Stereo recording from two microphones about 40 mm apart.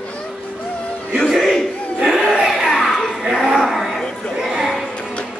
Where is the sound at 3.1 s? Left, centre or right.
Centre.